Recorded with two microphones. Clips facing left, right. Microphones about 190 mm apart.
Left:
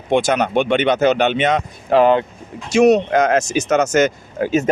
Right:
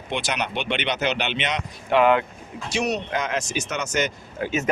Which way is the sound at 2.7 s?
45° left (ahead or behind).